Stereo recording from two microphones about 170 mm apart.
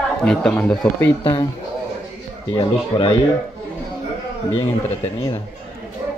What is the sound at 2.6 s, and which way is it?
Speech, 30° left (ahead or behind).